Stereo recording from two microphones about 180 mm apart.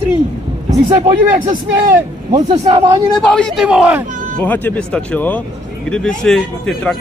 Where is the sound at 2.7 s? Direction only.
25° right (ahead or behind).